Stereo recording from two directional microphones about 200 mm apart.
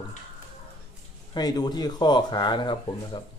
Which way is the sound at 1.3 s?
20° left (ahead or behind).